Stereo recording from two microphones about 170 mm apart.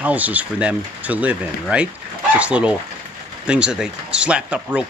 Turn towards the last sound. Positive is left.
turn(degrees=-5)  # may be behind; listen again after turning